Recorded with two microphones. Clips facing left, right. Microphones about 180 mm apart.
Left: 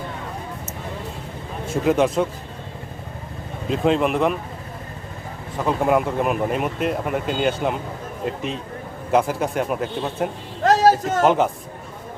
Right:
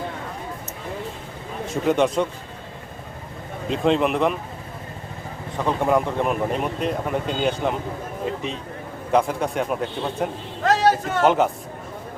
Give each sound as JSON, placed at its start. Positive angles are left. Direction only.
{"t": 1.7, "sound": "speech", "side_deg": 0}
{"t": 3.7, "sound": "speech", "side_deg": 0}
{"t": 5.5, "sound": "speech", "side_deg": 5}
{"t": 10.6, "sound": "a man's voice", "side_deg": 40}
{"t": 11.3, "sound": "speech", "side_deg": 0}